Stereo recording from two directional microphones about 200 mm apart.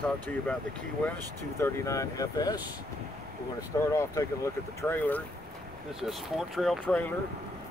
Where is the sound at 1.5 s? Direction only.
15° left (ahead or behind).